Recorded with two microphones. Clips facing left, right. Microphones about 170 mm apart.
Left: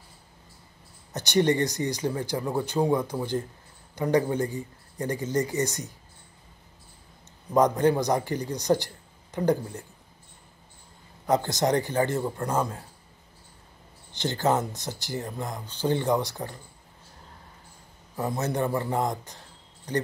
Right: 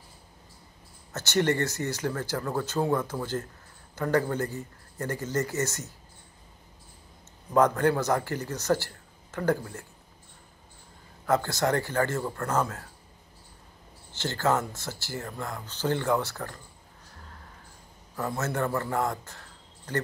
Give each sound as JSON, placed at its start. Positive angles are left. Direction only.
{"t": 1.1, "sound": "speech", "side_deg": 15}
{"t": 7.5, "sound": "speech", "side_deg": 15}
{"t": 11.2, "sound": "speech", "side_deg": 20}
{"t": 14.1, "sound": "speech", "side_deg": 15}
{"t": 18.1, "sound": "speech", "side_deg": 15}